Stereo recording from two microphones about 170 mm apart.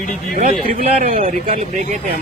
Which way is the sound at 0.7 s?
50° right (ahead or behind).